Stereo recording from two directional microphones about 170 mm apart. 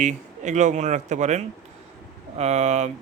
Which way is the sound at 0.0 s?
45° right (ahead or behind).